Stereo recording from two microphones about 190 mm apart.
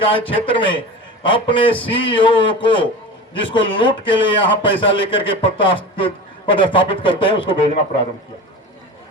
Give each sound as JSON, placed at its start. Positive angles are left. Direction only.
{"t": 0.0, "sound": "a man's voice", "side_deg": 25}